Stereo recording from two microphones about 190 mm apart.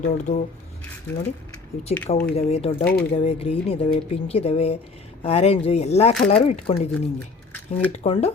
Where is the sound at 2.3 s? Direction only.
30° left (ahead or behind).